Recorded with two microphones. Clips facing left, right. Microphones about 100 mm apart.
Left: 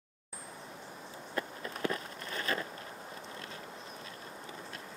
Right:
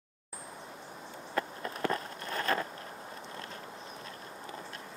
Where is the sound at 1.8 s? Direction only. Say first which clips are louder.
Right 2 dB; 40° right (ahead or behind).